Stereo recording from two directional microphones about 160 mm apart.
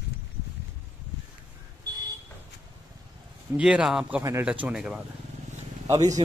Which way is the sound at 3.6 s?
5° right (ahead or behind).